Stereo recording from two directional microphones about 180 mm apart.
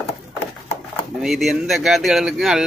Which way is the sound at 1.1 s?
Centre (ahead or behind).